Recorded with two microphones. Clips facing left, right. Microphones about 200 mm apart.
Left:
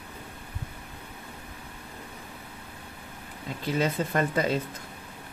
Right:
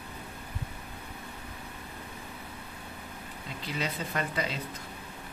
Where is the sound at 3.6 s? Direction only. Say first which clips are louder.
Left 8 dB; 50° left (ahead or behind).